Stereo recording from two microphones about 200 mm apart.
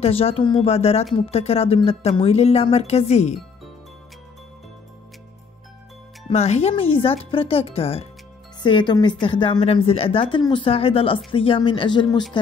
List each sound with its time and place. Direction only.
0.0 s a woman's voice: 30° left (ahead or behind)
6.2 s a woman's voice: 30° left (ahead or behind)